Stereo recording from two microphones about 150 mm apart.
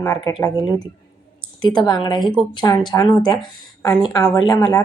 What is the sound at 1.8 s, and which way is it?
A woman's voice, 30° left (ahead or behind).